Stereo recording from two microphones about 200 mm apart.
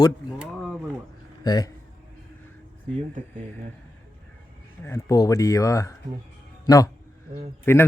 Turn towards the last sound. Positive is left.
turn(degrees=10)  # may be behind; listen again after turning